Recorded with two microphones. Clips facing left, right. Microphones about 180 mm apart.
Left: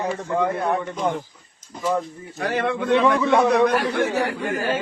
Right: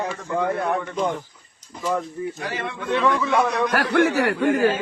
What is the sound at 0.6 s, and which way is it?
Speech, 15° left (ahead or behind).